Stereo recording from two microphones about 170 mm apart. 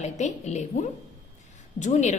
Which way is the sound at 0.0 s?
40° left (ahead or behind).